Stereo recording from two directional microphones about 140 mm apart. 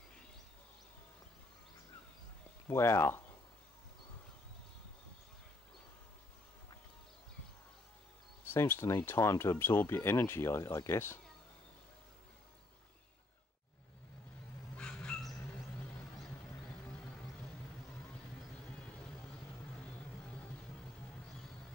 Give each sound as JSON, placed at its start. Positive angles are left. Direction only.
{"t": 2.7, "sound": "speech", "side_deg": 20}
{"t": 8.5, "sound": "speech", "side_deg": 15}
{"t": 14.8, "sound": "a sound", "side_deg": 5}